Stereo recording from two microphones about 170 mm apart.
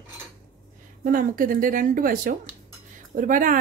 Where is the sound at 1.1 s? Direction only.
55° right (ahead or behind).